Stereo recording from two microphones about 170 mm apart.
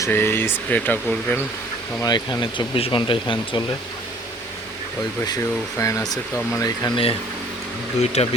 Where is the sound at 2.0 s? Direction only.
25° left (ahead or behind).